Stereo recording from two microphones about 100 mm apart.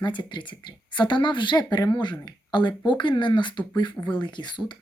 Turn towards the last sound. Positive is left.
turn(degrees=50)  # may be behind; listen again after turning